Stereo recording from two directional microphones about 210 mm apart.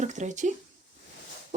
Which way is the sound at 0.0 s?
35° right (ahead or behind).